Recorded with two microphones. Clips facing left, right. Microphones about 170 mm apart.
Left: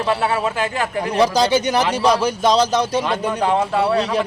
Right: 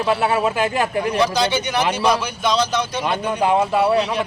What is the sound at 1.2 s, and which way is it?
A man's voice, 40° left (ahead or behind).